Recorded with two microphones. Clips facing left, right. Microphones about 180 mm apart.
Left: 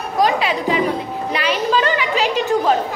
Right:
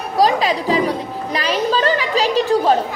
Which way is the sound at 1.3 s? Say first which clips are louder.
Even; 35° right (ahead or behind).